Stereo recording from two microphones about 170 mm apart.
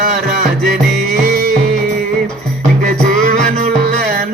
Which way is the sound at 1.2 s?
55° right (ahead or behind).